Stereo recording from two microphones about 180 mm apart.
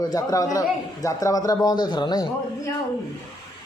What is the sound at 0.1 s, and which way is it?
A man's voice, 20° left (ahead or behind).